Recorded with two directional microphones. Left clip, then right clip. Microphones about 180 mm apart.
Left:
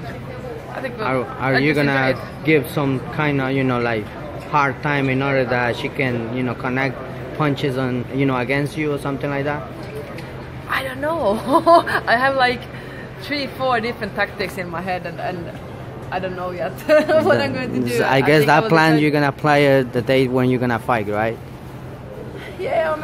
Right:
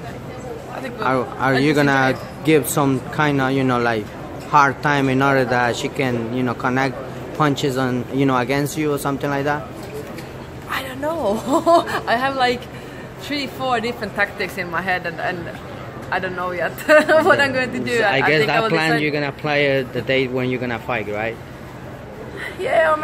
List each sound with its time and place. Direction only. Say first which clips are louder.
0.8 s a man's voice: right 2 dB; 5° right (ahead or behind)
10.7 s a man's voice: left 2 dB; 5° right (ahead or behind)
18.7 s speech: left 3 dB; 30° left (ahead or behind)
22.6 s a man's voice: right 3 dB; 5° right (ahead or behind)